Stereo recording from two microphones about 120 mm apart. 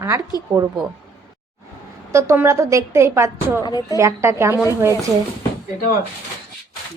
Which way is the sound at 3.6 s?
35° left (ahead or behind).